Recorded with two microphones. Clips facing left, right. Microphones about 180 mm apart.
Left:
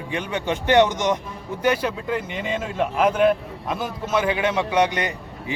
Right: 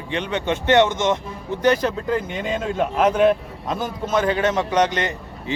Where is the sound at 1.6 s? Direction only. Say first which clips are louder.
Right 3 dB; 10° left (ahead or behind).